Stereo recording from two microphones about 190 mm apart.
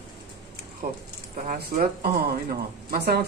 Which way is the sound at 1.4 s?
50° right (ahead or behind).